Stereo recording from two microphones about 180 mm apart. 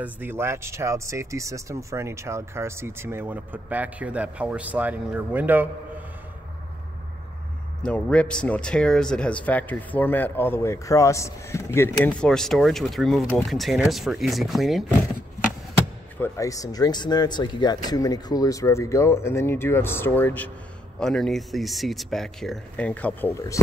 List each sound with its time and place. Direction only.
0.0 s speech: 10° right (ahead or behind)
7.8 s speech: 5° left (ahead or behind)
16.2 s speech: 20° left (ahead or behind)